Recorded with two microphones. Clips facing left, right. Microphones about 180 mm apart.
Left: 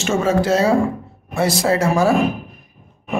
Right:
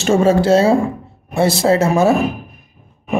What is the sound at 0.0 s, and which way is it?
A woman's voice, 35° right (ahead or behind).